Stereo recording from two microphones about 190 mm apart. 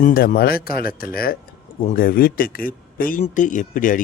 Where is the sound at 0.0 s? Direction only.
45° left (ahead or behind).